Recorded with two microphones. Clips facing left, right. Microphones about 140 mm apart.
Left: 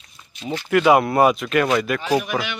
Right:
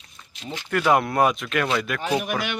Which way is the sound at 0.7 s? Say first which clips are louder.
Left 5 dB; 5° left (ahead or behind).